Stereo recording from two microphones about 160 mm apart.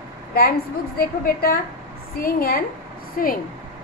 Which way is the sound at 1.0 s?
70° left (ahead or behind).